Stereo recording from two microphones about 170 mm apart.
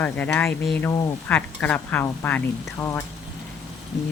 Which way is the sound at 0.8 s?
20° left (ahead or behind).